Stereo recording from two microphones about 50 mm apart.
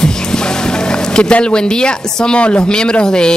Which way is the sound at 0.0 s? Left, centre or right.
Centre.